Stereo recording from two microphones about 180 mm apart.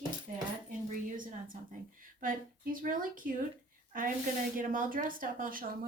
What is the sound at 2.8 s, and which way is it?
Speech, 50° right (ahead or behind).